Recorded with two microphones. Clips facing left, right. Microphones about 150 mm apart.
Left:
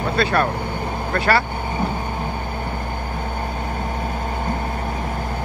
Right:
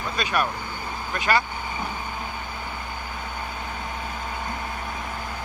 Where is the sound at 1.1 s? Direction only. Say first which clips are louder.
Left 4 dB; 15° right (ahead or behind).